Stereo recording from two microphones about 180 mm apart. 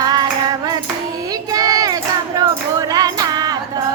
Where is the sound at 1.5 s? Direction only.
20° right (ahead or behind).